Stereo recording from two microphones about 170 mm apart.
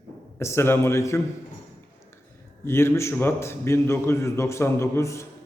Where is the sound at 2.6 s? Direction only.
15° left (ahead or behind).